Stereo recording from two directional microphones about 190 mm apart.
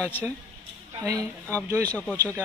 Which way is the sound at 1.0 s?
15° right (ahead or behind).